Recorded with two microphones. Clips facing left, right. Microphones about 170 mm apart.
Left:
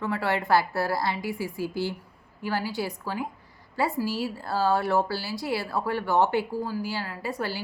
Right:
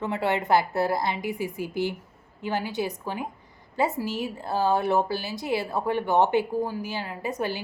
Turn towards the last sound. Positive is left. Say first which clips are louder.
# right 2 dB
turn(degrees=-20)  # may be behind; listen again after turning